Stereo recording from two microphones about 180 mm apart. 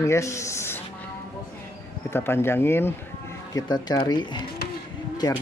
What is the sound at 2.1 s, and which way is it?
Speech, 15° left (ahead or behind).